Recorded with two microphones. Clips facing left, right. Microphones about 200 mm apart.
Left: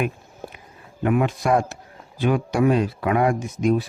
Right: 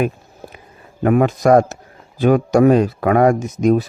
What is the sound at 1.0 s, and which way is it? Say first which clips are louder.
A man's voice: right 7 dB; 45° right (ahead or behind).